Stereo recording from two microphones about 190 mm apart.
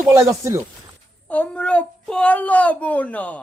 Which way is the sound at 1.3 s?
5° left (ahead or behind).